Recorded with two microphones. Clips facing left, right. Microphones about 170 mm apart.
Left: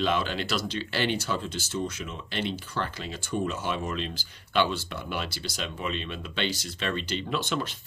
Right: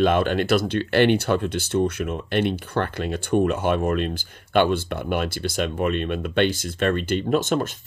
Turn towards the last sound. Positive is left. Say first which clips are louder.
# right 9 dB
turn(degrees=-45)  # may be behind; listen again after turning